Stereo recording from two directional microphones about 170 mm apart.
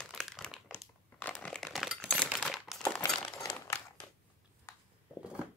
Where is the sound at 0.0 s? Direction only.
5° left (ahead or behind).